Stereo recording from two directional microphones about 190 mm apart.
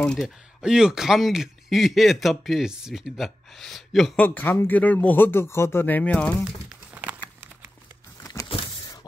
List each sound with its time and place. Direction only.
0.0 s speech: 5° left (ahead or behind)
6.9 s crumpling: 10° right (ahead or behind)
8.2 s power windows: 15° left (ahead or behind)